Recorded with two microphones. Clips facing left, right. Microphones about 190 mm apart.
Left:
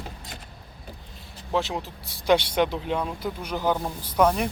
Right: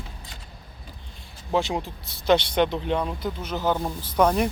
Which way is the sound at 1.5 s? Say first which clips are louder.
Right 2 dB; centre (ahead or behind).